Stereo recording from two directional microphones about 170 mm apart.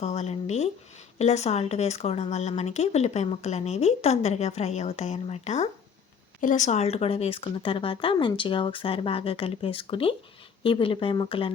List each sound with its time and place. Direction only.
0.0 s a woman's voice: 40° left (ahead or behind)